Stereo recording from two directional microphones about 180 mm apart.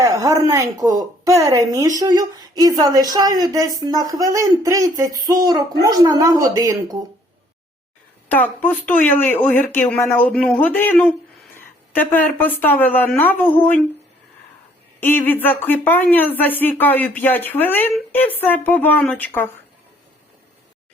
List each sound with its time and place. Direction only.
0.0 s a woman's voice: 20° right (ahead or behind)
8.3 s a woman's voice: 10° left (ahead or behind)
15.0 s a woman's voice: 10° left (ahead or behind)